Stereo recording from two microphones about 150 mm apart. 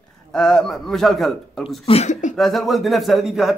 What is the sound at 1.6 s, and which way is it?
Speech, 40° left (ahead or behind).